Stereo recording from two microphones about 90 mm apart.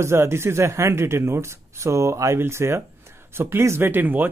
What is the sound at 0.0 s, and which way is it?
Speech, 30° right (ahead or behind).